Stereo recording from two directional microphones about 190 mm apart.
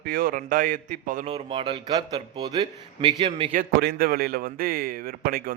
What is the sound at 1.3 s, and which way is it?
A man's voice, 25° right (ahead or behind).